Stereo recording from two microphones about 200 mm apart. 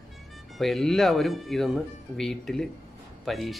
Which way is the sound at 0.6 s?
Centre (ahead or behind).